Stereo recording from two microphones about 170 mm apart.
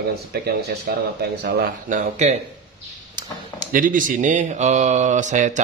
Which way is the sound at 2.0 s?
40° right (ahead or behind).